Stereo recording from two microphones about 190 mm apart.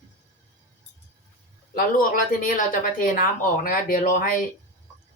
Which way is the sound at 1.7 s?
45° left (ahead or behind).